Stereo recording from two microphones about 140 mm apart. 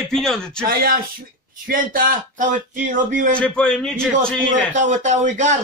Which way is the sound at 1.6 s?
80° right.